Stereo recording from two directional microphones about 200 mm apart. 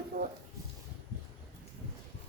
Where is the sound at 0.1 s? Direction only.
45° right (ahead or behind).